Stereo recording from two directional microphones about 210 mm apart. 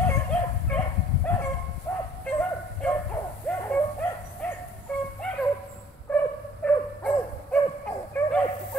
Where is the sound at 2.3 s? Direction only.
10° left (ahead or behind).